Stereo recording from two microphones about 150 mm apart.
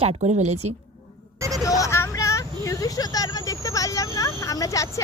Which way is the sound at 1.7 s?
20° left (ahead or behind).